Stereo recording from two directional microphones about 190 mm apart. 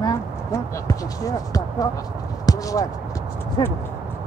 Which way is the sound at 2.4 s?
20° left (ahead or behind).